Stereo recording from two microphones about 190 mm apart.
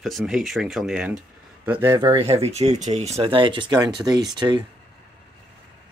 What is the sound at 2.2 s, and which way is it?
Speech, 30° right (ahead or behind).